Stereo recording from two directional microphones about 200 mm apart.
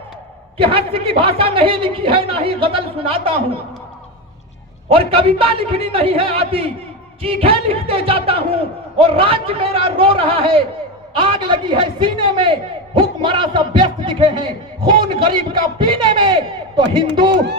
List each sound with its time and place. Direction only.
0.6 s a man's voice: 25° right (ahead or behind)
4.9 s a man's voice: 30° right (ahead or behind)